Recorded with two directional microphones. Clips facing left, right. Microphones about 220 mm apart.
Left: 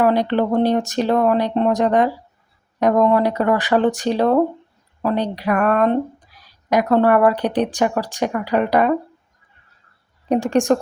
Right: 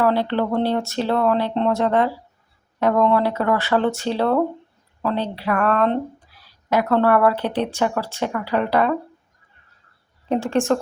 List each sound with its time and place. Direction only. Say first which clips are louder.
0.0 s speech: left 3 dB; 15° left (ahead or behind)
10.2 s speech: left 3 dB; 15° left (ahead or behind)